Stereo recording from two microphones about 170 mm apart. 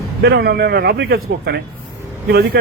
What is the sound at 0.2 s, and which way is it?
A man's voice, 75° right (ahead or behind).